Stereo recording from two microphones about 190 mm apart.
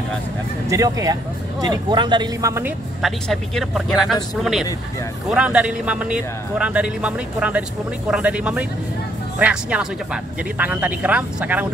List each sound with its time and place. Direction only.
0.7 s speech: 15° right (ahead or behind)
3.0 s speech: centre (ahead or behind)